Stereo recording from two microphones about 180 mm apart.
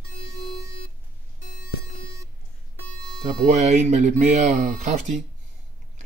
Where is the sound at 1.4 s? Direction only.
50° left (ahead or behind).